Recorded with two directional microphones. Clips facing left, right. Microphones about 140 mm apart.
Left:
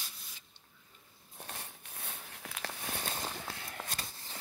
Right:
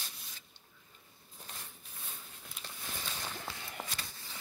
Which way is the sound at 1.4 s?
65° left (ahead or behind).